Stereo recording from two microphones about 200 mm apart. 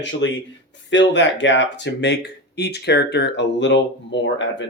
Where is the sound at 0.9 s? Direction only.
65° left (ahead or behind).